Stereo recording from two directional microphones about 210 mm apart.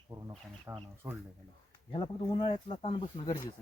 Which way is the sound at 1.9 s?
20° left (ahead or behind).